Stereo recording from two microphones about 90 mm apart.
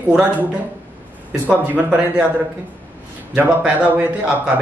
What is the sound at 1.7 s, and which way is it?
Speech, 10° right (ahead or behind).